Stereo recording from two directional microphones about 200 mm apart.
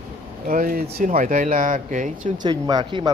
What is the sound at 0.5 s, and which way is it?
Speech, 45° right (ahead or behind).